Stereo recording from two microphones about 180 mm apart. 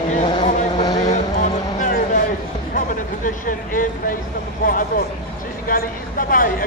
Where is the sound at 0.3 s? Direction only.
25° left (ahead or behind).